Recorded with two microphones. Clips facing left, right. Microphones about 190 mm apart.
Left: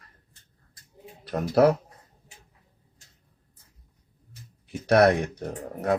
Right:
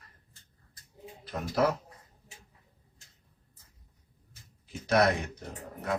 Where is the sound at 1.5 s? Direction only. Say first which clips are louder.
Left 8 dB; 75° left (ahead or behind).